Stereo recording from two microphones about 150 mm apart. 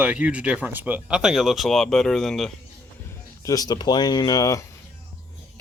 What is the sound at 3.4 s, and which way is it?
Speech, 25° left (ahead or behind).